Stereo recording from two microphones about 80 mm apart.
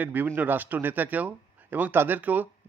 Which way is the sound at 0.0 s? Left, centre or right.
Right.